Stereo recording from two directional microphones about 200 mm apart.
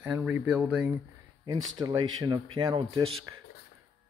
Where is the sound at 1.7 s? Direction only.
20° right (ahead or behind).